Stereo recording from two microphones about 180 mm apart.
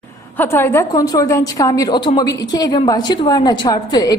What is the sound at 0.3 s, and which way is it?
A woman's voice, 10° left (ahead or behind).